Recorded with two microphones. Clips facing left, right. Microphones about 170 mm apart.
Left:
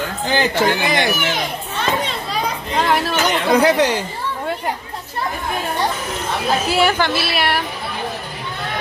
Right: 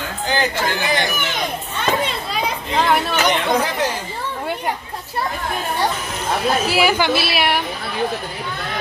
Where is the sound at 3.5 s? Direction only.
70° left (ahead or behind).